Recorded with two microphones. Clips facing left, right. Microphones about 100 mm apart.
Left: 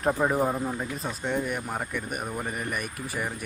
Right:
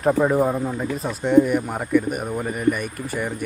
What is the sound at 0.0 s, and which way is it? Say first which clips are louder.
Speech: right 6 dB; centre (ahead or behind).